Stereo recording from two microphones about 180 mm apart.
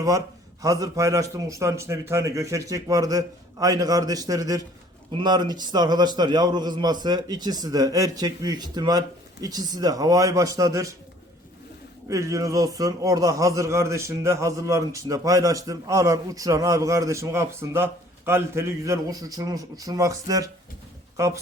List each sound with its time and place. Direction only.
0.6 s a man's voice: 20° right (ahead or behind)
12.0 s a man's voice: 15° right (ahead or behind)